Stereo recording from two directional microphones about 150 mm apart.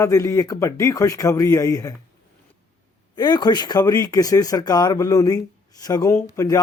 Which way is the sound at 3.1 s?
30° left (ahead or behind).